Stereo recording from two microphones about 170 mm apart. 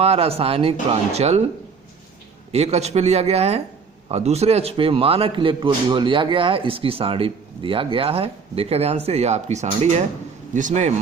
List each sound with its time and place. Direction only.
0.0 s a man's voice: 35° right (ahead or behind)
2.5 s a man's voice: 40° right (ahead or behind)